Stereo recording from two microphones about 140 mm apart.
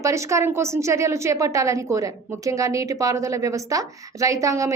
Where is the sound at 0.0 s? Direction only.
20° right (ahead or behind).